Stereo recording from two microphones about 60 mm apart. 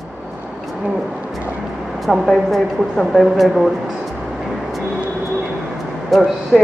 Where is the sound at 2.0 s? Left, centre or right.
Centre.